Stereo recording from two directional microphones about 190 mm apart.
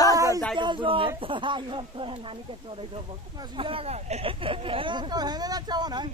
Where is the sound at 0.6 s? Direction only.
25° right (ahead or behind).